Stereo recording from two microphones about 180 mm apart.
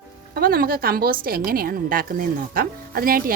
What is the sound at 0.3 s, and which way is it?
A woman's voice, 55° right (ahead or behind).